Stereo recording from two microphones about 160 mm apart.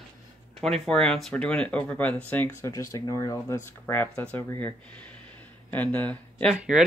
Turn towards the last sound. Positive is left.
turn(degrees=-5)  # may be behind; listen again after turning